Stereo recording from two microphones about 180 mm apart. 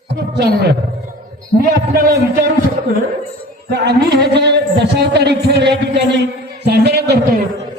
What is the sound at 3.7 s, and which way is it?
A man's voice, 65° right (ahead or behind).